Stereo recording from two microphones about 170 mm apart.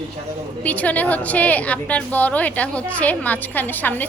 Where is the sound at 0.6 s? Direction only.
10° left (ahead or behind).